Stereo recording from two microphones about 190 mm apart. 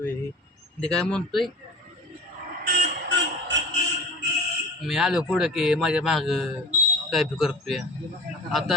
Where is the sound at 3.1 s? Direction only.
70° right (ahead or behind).